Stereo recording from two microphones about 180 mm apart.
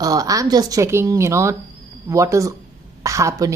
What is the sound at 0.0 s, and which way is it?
A woman's voice, 20° right (ahead or behind).